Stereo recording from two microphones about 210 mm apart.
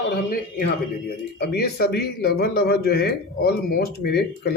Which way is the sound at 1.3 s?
50° left (ahead or behind).